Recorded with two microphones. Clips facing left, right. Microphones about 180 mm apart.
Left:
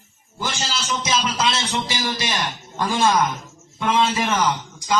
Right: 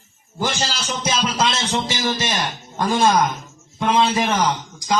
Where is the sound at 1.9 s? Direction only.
45° right (ahead or behind).